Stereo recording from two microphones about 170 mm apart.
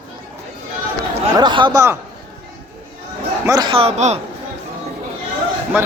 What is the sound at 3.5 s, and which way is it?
Speech, 25° right (ahead or behind).